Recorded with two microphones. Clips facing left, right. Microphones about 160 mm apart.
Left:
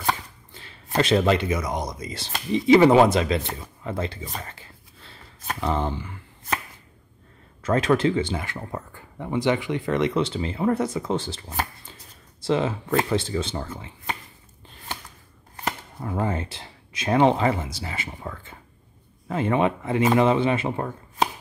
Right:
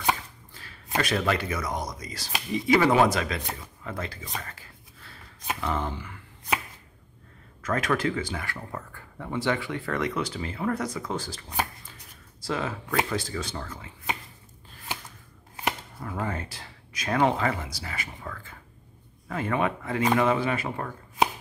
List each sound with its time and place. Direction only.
0.5 s a sound: 25° left (ahead or behind)
0.9 s speech: 25° left (ahead or behind)
4.4 s a sound: 25° left (ahead or behind)
5.6 s speech: 25° left (ahead or behind)
7.6 s speech: 25° left (ahead or behind)
16.0 s speech: 25° left (ahead or behind)